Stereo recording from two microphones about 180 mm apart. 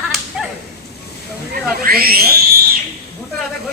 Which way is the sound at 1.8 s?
55° right (ahead or behind).